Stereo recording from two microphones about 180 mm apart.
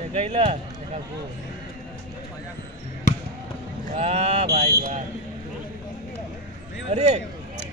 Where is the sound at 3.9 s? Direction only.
35° right (ahead or behind).